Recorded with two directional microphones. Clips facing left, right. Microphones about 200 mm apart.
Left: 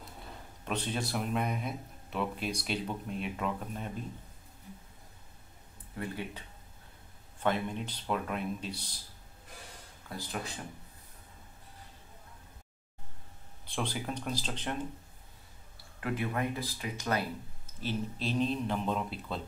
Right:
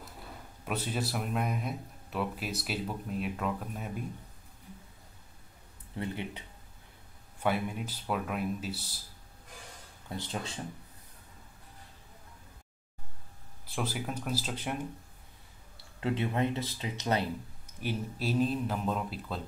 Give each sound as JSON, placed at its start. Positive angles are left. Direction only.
{"t": 0.7, "sound": "speech", "side_deg": -5}
{"t": 5.9, "sound": "speech", "side_deg": -20}
{"t": 7.4, "sound": "speech", "side_deg": -10}
{"t": 10.0, "sound": "speech", "side_deg": -25}
{"t": 13.7, "sound": "speech", "side_deg": -5}
{"t": 16.0, "sound": "speech", "side_deg": -25}
{"t": 17.7, "sound": "speech", "side_deg": -10}